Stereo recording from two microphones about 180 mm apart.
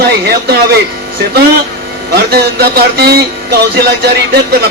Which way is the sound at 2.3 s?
60° right (ahead or behind).